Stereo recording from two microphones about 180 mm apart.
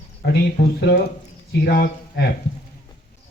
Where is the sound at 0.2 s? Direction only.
60° left (ahead or behind).